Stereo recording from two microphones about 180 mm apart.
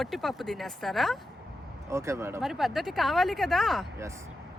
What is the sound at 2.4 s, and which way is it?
Speech, centre (ahead or behind).